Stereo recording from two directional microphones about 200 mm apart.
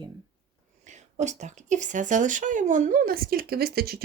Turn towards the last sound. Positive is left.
turn(degrees=-50)  # may be behind; listen again after turning